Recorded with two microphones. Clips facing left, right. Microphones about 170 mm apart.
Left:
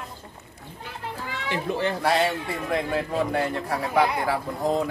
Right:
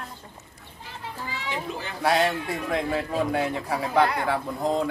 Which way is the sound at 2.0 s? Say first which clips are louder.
Right 5 dB; centre (ahead or behind).